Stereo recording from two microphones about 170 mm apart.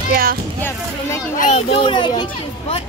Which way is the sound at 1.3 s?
50° left (ahead or behind).